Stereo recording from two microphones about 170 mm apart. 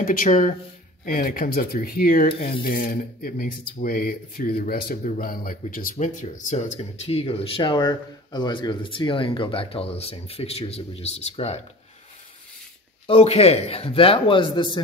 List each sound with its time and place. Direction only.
0.0 s speech: 50° left (ahead or behind)
7.1 s speech: 35° left (ahead or behind)
13.0 s speech: 35° left (ahead or behind)